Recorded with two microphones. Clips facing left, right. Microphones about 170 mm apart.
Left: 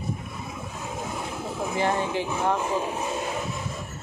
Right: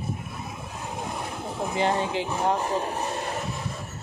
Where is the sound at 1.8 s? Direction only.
20° right (ahead or behind).